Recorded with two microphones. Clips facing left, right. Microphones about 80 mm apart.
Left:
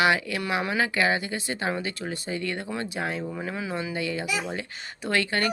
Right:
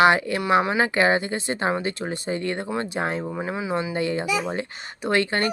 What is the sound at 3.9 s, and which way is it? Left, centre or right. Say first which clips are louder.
Speech: right 5 dB; right.